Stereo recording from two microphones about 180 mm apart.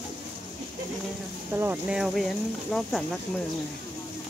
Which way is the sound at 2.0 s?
Centre (ahead or behind).